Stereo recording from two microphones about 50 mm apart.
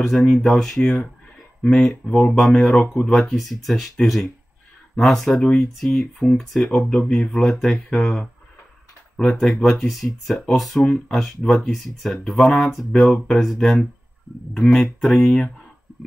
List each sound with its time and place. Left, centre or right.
0.0 s speech: centre
2.4 s speech: centre
9.4 s speech: centre